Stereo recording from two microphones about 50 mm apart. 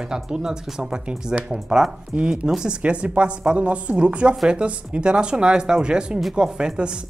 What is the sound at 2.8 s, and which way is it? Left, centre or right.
A woman's voice, right.